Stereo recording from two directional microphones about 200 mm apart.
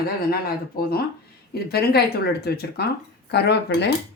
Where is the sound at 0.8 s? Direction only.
50° left (ahead or behind).